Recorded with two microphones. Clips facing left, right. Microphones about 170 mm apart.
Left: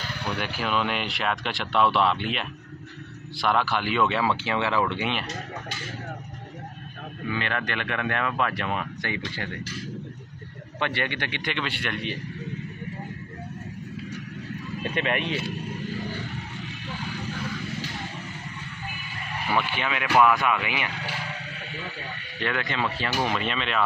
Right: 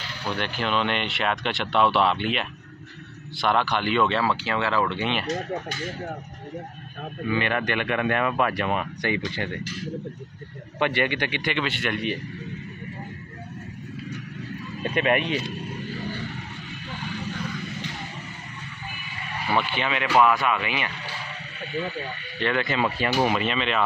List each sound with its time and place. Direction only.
0.3 s speech: 5° left (ahead or behind)
7.3 s speech: 15° right (ahead or behind)
10.8 s speech: 15° right (ahead or behind)
19.9 s speech: 10° left (ahead or behind)
20.2 s speech: 20° right (ahead or behind)
20.6 s speech: 15° left (ahead or behind)
22.4 s speech: centre (ahead or behind)